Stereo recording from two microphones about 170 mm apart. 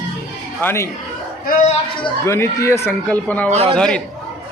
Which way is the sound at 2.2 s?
15° left (ahead or behind).